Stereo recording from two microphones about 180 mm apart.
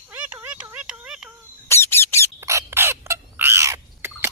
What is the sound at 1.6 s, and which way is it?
Squeak, 15° left (ahead or behind).